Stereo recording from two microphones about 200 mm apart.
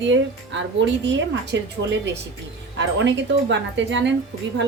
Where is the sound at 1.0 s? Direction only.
65° right (ahead or behind).